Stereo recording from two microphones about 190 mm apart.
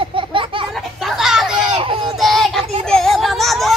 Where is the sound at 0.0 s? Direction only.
25° right (ahead or behind).